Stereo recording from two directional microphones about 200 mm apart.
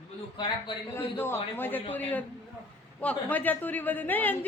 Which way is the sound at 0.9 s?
10° left (ahead or behind).